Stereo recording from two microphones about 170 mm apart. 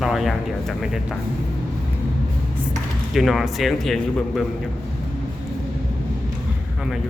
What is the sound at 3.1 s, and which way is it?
Speech, centre (ahead or behind).